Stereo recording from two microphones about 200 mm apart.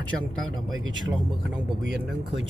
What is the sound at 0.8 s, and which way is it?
Speech, 70° right (ahead or behind).